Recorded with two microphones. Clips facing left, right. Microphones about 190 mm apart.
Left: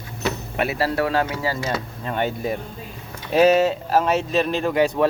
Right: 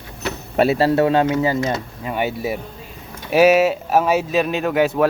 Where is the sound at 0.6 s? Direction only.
25° right (ahead or behind).